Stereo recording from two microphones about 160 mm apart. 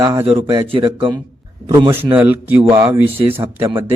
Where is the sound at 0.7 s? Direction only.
35° right (ahead or behind).